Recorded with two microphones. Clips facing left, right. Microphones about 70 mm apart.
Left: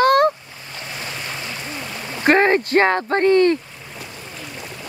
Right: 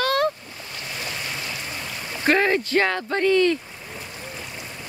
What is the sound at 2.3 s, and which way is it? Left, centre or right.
Speech, left.